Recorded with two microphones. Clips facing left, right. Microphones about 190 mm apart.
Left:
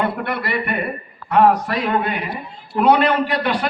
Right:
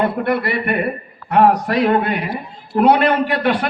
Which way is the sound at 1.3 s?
50° right (ahead or behind).